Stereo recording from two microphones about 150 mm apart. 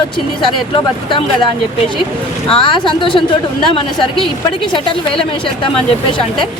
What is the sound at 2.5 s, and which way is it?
Speech, 35° left (ahead or behind).